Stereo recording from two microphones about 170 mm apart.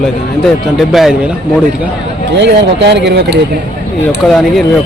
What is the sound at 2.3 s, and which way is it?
Speech, 90° right.